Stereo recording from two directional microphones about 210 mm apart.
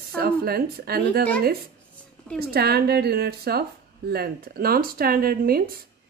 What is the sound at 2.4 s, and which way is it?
Speech, 50° right (ahead or behind).